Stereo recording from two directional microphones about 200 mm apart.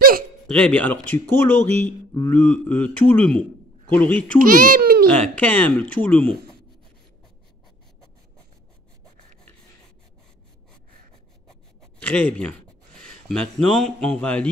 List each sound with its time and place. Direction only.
0.5 s speech: 5° left (ahead or behind)
4.4 s a child's voice: 45° right (ahead or behind)
5.4 s speech: 10° left (ahead or behind)
12.0 s a man's voice: 5° left (ahead or behind)